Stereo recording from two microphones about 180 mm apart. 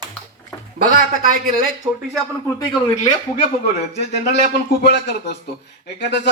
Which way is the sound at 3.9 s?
40° right (ahead or behind).